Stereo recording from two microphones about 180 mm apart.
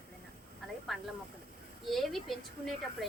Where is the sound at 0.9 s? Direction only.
Centre (ahead or behind).